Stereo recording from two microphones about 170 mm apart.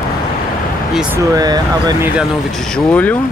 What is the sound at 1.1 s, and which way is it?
Speech, 20° right (ahead or behind).